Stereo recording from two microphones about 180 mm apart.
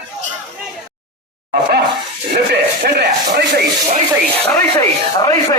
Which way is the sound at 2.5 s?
60° right (ahead or behind).